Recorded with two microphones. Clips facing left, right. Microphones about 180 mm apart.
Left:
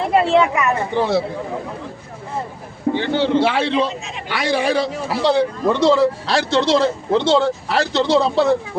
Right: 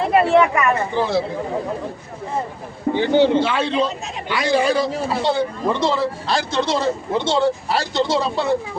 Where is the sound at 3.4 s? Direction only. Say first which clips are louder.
Left 2 dB; 65° left (ahead or behind).